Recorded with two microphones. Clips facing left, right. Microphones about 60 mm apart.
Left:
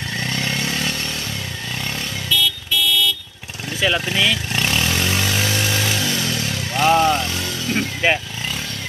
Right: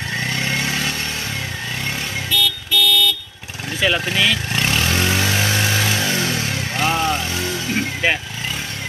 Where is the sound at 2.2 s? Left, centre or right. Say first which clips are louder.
Left 1 dB; right.